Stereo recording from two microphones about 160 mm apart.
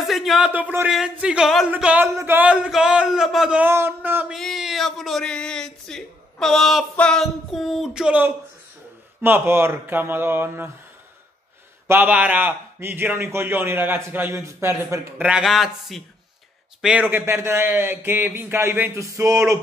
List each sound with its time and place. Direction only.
0.0 s a sound: centre (ahead or behind)
1.7 s a man's voice: 10° right (ahead or behind)
4.4 s a sound: centre (ahead or behind)
9.2 s a man's voice: 15° right (ahead or behind)
11.9 s a man's voice: 10° right (ahead or behind)
17.1 s a man's voice: 15° right (ahead or behind)